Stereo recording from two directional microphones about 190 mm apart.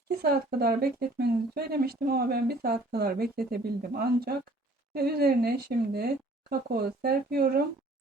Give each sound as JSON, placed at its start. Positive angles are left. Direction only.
{"t": 0.2, "sound": "speech", "side_deg": -55}